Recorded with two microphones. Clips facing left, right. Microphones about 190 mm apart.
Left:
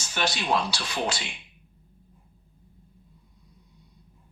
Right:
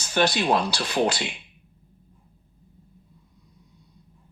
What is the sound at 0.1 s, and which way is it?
Speech, 45° right (ahead or behind).